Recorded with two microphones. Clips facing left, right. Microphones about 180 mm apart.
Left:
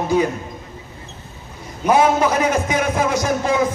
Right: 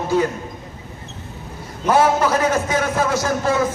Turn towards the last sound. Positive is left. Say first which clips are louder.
# left 1 dB
turn(degrees=15)  # may be behind; listen again after turning